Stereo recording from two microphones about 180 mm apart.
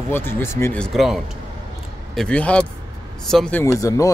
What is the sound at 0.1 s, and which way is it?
Speech, 15° left (ahead or behind).